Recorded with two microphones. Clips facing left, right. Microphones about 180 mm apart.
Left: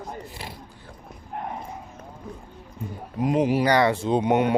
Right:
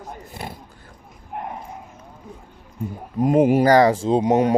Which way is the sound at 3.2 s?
50° right (ahead or behind).